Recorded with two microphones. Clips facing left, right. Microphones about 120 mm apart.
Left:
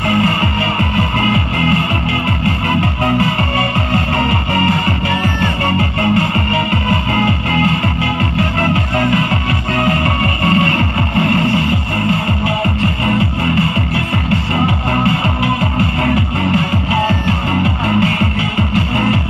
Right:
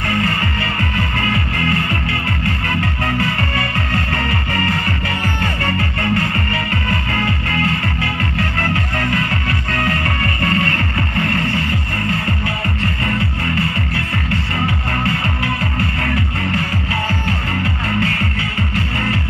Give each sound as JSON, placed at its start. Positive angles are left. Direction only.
{"t": 0.1, "sound": "music", "side_deg": 20}